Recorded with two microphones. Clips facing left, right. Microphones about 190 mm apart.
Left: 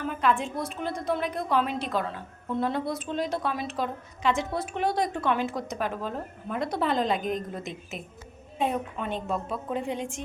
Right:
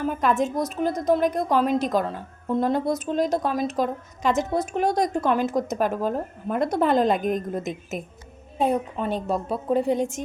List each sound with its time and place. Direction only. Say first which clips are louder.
0.0 s a woman's voice: right 4 dB; 40° right (ahead or behind)